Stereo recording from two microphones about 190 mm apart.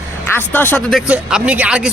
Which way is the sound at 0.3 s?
10° left (ahead or behind).